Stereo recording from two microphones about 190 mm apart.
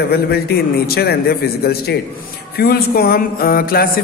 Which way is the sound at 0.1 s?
55° left (ahead or behind).